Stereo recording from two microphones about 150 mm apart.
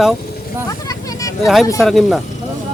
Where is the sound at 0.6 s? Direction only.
25° left (ahead or behind).